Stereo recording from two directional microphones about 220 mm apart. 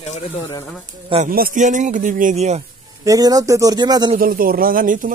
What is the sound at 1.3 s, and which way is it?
Speech, 40° right (ahead or behind).